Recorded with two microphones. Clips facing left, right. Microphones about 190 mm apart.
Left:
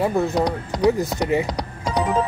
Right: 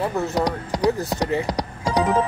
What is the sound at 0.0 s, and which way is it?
Speech, 15° left (ahead or behind).